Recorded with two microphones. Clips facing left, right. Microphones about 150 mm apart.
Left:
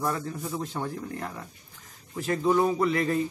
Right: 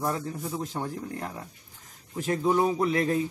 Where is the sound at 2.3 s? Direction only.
15° right (ahead or behind).